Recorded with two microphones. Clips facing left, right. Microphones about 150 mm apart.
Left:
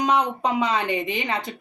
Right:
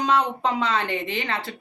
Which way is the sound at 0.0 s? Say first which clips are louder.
Even; 15° left (ahead or behind).